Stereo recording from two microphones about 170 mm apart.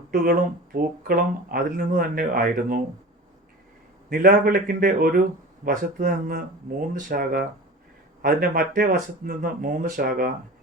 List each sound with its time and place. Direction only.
0.1 s speech: 55° right (ahead or behind)
4.1 s speech: 60° right (ahead or behind)